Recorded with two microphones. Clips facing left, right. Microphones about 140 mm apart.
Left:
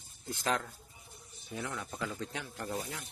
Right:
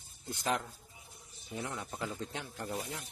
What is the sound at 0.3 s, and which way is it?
Speech, 20° right (ahead or behind).